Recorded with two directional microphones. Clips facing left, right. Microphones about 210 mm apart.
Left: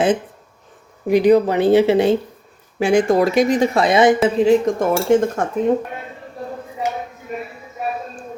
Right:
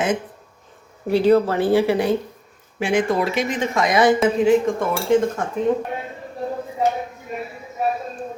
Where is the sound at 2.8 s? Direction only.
40° left (ahead or behind).